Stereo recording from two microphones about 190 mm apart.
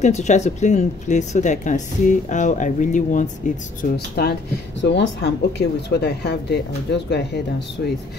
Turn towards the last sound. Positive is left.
turn(degrees=60)  # may be behind; listen again after turning